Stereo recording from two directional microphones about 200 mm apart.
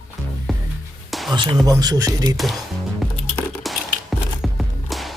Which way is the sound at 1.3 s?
20° right (ahead or behind).